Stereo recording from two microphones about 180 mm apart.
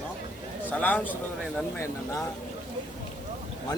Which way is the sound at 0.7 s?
10° left (ahead or behind).